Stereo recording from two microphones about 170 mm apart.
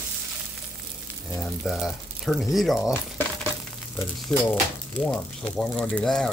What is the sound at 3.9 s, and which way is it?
Speech, 10° left (ahead or behind).